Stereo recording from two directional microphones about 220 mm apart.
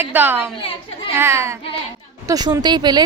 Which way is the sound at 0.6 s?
25° left (ahead or behind).